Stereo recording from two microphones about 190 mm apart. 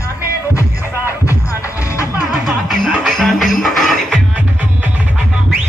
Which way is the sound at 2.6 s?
Centre (ahead or behind).